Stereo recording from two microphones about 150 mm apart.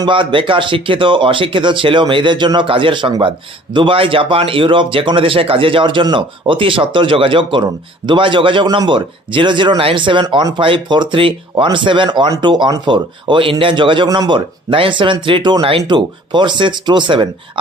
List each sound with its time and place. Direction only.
0.0 s speech: 35° right (ahead or behind)